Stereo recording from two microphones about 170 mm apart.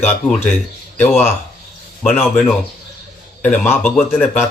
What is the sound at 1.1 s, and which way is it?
Speech, 40° left (ahead or behind).